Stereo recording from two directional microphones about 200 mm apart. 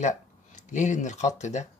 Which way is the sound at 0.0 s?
40° left (ahead or behind).